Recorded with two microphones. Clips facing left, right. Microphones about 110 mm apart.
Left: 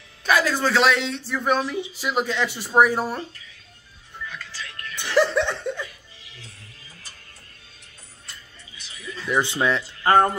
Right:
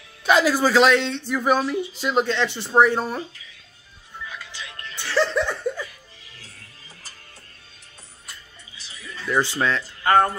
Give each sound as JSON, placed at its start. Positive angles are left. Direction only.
{"t": 0.2, "sound": "a man's voice", "side_deg": -15}
{"t": 0.6, "sound": "a man's voice", "side_deg": 0}
{"t": 4.3, "sound": "music", "side_deg": -15}
{"t": 4.9, "sound": "music", "side_deg": 15}
{"t": 5.3, "sound": "a sound", "side_deg": -5}
{"t": 9.2, "sound": "speech", "side_deg": 20}